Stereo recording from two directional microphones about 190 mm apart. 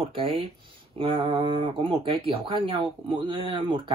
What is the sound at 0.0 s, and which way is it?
Speech, 30° right (ahead or behind).